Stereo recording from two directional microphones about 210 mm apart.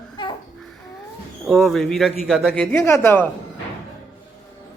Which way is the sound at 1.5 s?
Centre (ahead or behind).